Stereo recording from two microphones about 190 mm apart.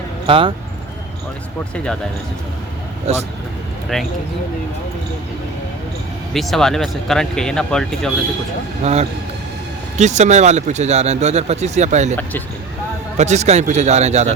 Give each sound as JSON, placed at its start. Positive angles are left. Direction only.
{"t": 0.3, "sound": "speech", "side_deg": -30}
{"t": 1.7, "sound": "speech", "side_deg": 5}
{"t": 3.1, "sound": "speech", "side_deg": -35}
{"t": 3.9, "sound": "speech", "side_deg": 0}
{"t": 6.3, "sound": "speech", "side_deg": 0}
{"t": 8.8, "sound": "speech", "side_deg": -35}
{"t": 13.1, "sound": "speech", "side_deg": -35}